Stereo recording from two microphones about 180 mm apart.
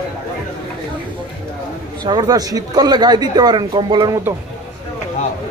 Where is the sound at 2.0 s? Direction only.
20° right (ahead or behind).